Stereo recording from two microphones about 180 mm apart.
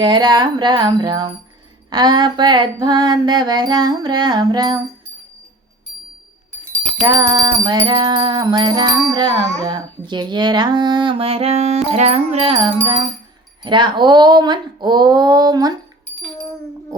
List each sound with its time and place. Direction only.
0.0 s music: 25° right (ahead or behind)
7.0 s music: 20° right (ahead or behind)